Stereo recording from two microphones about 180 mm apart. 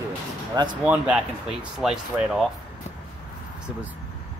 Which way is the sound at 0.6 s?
25° right (ahead or behind).